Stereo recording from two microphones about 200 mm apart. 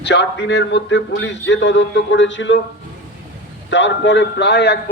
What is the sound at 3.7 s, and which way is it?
Speech, 65° left (ahead or behind).